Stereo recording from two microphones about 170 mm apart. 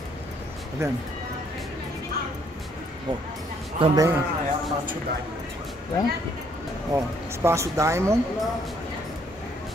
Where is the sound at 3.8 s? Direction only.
20° right (ahead or behind).